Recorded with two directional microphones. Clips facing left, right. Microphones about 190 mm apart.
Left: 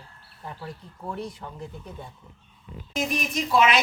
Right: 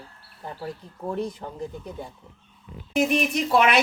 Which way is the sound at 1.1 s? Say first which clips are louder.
Right 5 dB; 20° right (ahead or behind).